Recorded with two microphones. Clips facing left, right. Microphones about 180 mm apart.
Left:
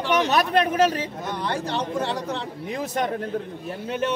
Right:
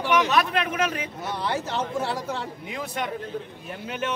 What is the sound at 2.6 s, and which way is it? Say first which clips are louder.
Speech: left 7 dB; 40° left (ahead or behind).